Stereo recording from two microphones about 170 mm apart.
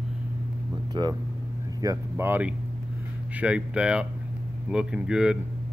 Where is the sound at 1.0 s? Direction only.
25° right (ahead or behind); by 5.4 s 5° right (ahead or behind).